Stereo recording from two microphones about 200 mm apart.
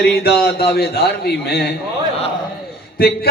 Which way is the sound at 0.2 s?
50° left (ahead or behind).